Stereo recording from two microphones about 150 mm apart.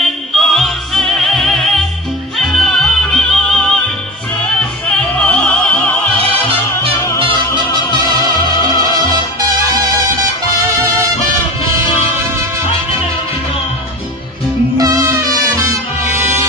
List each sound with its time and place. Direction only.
0.3 s music: centre (ahead or behind)
4.8 s music: 10° left (ahead or behind)
7.9 s music: 30° left (ahead or behind)
9.4 s music: 25° right (ahead or behind)
14.8 s music: 20° right (ahead or behind)